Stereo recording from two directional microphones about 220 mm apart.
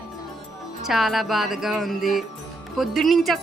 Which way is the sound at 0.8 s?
Centre (ahead or behind).